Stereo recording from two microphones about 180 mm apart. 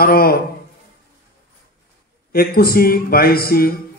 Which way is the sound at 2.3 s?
55° left (ahead or behind).